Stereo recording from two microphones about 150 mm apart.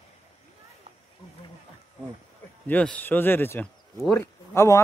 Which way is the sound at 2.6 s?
10° left (ahead or behind).